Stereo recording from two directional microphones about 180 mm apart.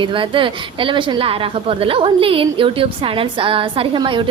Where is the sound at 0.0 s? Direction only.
30° right (ahead or behind).